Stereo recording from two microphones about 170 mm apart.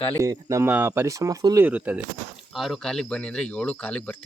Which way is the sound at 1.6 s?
10° right (ahead or behind).